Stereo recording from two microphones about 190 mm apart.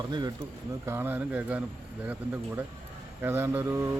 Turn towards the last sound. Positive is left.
turn(degrees=-15)  # may be behind; listen again after turning